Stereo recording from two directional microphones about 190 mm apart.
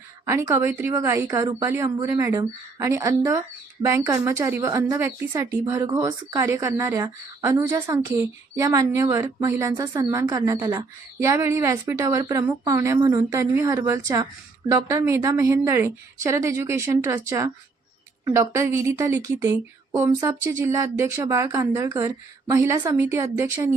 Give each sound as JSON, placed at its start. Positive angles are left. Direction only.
{"t": 0.3, "sound": "a woman's voice", "side_deg": -15}